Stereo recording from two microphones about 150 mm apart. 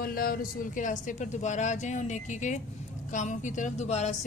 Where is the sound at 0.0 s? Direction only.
80° left.